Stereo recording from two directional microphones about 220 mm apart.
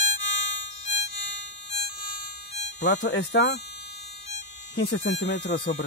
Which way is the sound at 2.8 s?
50° left (ahead or behind).